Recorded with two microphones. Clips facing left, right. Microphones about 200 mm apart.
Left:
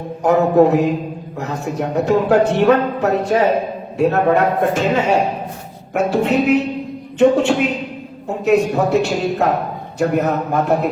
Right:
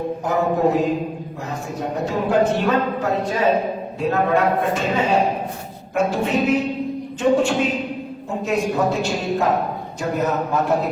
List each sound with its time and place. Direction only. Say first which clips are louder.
0.2 s a man's voice: left 8 dB; 70° left (ahead or behind)
2.0 s a man's voice: left 4 dB; 70° left (ahead or behind)